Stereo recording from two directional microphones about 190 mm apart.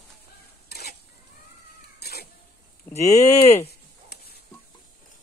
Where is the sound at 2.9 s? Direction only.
35° left (ahead or behind).